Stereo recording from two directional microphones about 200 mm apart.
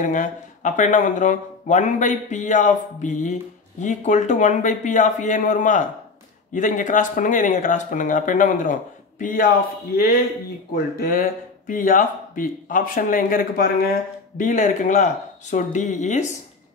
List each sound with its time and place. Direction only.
0.0 s speech: 40° left (ahead or behind)
10.7 s speech: 45° left (ahead or behind)